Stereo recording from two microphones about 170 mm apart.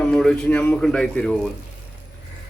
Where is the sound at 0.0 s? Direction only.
5° left (ahead or behind).